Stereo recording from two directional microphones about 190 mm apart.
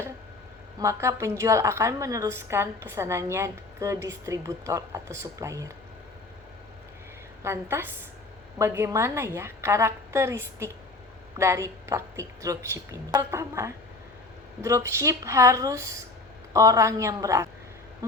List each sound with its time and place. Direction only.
0.8 s a woman's voice: 15° right (ahead or behind)
7.4 s a woman's voice: 15° right (ahead or behind)